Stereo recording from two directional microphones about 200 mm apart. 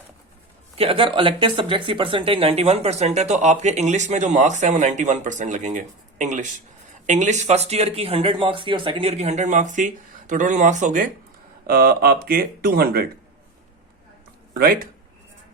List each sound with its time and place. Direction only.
0.8 s speech: 25° right (ahead or behind); by 13.1 s 50° right (ahead or behind)
14.5 s speech: 45° right (ahead or behind)